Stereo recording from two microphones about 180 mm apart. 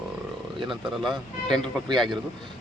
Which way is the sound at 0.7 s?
Centre (ahead or behind).